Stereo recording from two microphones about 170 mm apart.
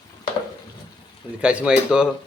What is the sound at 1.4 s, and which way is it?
Speech, 5° right (ahead or behind).